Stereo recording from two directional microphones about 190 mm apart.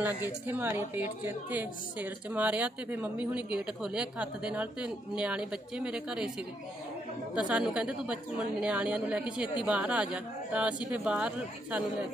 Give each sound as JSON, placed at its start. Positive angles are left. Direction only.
{"t": 0.0, "sound": "a woman's voice", "side_deg": -10}
{"t": 7.3, "sound": "a woman's voice", "side_deg": -5}